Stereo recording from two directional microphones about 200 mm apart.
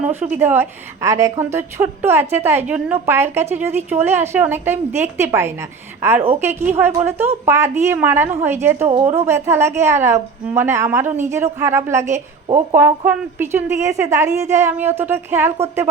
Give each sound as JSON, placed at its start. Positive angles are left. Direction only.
{"t": 0.1, "sound": "a woman's voice", "side_deg": -10}
{"t": 8.9, "sound": "speech", "side_deg": -30}
{"t": 9.2, "sound": "a woman's voice", "side_deg": -10}